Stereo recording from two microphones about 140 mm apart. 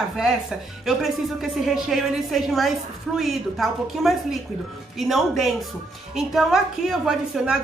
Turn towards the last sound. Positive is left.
turn(degrees=-5)  # may be behind; listen again after turning